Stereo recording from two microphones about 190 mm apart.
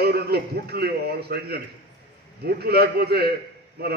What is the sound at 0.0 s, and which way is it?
A man's voice, 55° right (ahead or behind).